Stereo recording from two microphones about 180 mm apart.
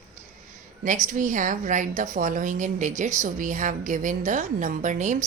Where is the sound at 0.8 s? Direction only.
45° right (ahead or behind).